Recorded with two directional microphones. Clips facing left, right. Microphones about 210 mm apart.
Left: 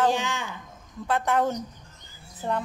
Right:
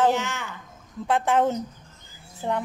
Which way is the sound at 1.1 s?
20° right (ahead or behind).